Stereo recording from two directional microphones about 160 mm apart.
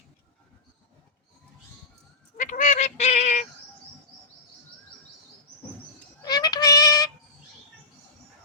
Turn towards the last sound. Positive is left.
turn(degrees=25)  # may be behind; listen again after turning